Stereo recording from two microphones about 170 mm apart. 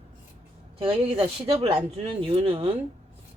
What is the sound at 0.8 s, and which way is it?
Speech, 35° right (ahead or behind).